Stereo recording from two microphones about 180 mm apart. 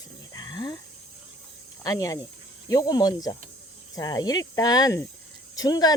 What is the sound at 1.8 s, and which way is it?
Speech, 20° left (ahead or behind).